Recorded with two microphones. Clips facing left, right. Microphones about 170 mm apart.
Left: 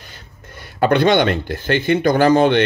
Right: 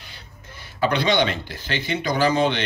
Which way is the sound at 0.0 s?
50° left (ahead or behind).